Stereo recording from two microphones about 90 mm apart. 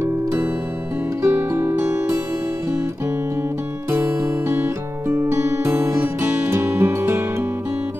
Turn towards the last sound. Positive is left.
turn(degrees=-30)  # may be behind; listen again after turning